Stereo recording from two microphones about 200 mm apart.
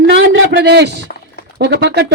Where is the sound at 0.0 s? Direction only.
60° right (ahead or behind).